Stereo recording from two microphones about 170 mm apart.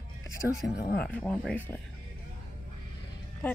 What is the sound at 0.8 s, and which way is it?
Speech, 65° left (ahead or behind).